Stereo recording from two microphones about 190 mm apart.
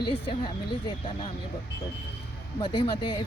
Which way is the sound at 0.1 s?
25° left (ahead or behind).